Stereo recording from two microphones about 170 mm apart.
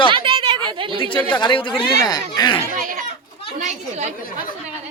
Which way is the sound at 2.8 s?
50° right (ahead or behind).